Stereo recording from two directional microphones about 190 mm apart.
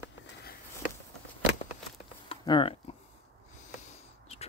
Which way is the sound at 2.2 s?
25° left (ahead or behind).